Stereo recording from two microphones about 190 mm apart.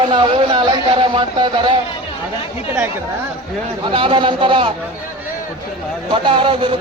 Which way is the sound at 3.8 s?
25° right (ahead or behind).